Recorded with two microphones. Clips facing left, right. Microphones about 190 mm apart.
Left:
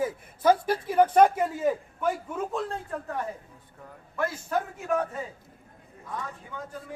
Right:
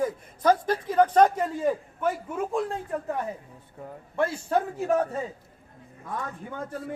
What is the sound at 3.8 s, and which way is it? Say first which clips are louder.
A man's voice: right 4 dB; 30° right (ahead or behind).